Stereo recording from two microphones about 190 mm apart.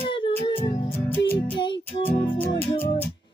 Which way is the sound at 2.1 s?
10° left (ahead or behind).